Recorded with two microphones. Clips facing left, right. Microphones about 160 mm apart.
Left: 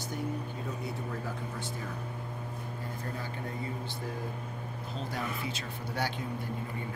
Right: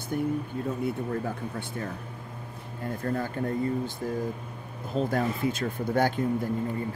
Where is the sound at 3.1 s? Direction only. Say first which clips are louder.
Right 9 dB; 50° right (ahead or behind).